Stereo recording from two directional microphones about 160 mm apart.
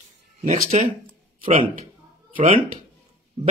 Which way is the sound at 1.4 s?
40° right (ahead or behind).